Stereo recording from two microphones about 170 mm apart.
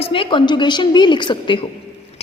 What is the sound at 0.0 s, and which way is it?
A woman's voice, 30° left (ahead or behind).